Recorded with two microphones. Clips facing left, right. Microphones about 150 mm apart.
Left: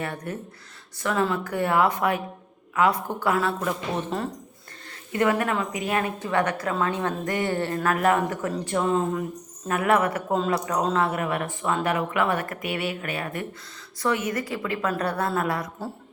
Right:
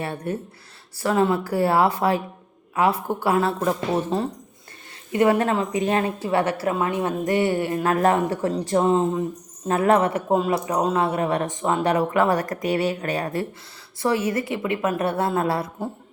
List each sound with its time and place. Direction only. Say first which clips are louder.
0.0 s a woman's voice: right 4 dB; 30° right (ahead or behind)
7.9 s a woman's voice: right 2 dB; 30° right (ahead or behind)